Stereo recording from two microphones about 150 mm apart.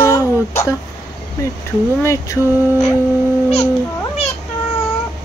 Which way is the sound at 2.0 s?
20° left (ahead or behind).